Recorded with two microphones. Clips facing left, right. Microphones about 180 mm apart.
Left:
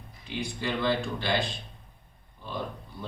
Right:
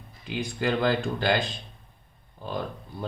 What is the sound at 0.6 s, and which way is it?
Speech, 45° right (ahead or behind).